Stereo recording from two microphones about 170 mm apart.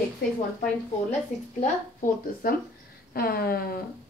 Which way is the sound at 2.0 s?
60° left (ahead or behind).